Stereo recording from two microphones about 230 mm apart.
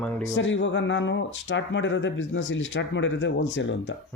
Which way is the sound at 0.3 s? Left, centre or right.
Left.